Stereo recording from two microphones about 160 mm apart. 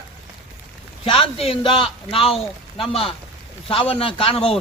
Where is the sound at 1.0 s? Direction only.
35° left (ahead or behind).